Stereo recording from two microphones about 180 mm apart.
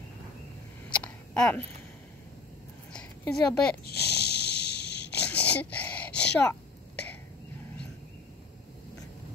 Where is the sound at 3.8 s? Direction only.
65° left (ahead or behind).